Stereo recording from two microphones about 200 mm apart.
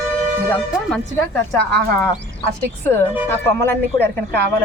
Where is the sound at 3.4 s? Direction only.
10° left (ahead or behind).